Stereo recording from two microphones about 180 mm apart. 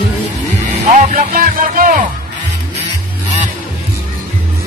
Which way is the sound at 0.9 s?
50° right (ahead or behind).